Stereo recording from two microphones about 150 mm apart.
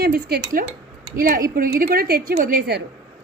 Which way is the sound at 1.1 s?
65° right (ahead or behind).